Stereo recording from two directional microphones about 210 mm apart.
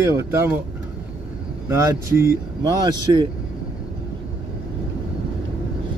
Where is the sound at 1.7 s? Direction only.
10° right (ahead or behind).